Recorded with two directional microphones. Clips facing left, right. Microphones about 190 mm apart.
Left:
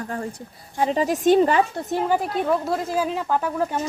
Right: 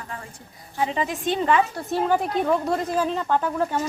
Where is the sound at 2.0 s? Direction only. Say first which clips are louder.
Right 1 dB; 5° left (ahead or behind).